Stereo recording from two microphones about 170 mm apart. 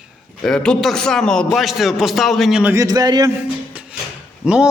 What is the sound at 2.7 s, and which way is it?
Speech, 20° right (ahead or behind).